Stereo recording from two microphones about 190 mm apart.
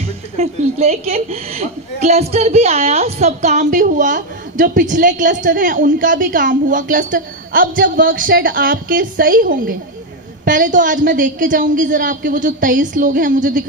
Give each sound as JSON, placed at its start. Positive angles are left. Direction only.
{"t": 0.4, "sound": "a woman's voice", "side_deg": -35}